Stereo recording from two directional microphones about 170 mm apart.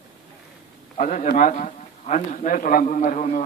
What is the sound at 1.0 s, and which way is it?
A man's voice, 50° left (ahead or behind).